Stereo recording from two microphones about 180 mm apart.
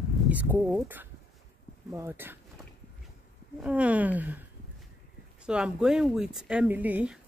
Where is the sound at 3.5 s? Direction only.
5° right (ahead or behind).